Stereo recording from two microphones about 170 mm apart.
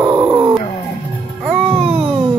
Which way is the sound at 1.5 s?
5° left (ahead or behind).